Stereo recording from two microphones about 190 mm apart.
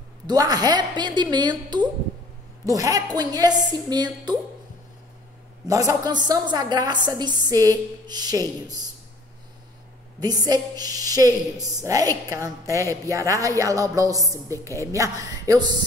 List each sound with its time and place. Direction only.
0.3 s a woman's voice: 20° right (ahead or behind)
5.7 s a woman's voice: 20° right (ahead or behind)
10.2 s a woman's voice: 20° right (ahead or behind)